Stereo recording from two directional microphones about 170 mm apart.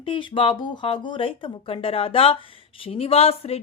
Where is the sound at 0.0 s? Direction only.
30° left (ahead or behind).